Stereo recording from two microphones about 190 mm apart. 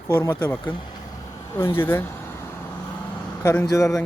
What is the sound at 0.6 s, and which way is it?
Speech, 25° left (ahead or behind).